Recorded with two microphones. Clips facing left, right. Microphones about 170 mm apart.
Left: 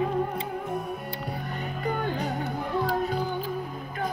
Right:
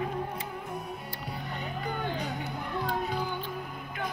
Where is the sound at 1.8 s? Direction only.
50° left (ahead or behind).